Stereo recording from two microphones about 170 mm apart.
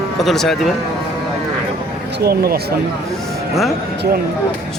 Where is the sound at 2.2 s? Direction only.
65° right (ahead or behind).